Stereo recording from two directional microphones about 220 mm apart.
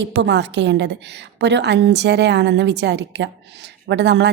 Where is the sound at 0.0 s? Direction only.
55° right (ahead or behind).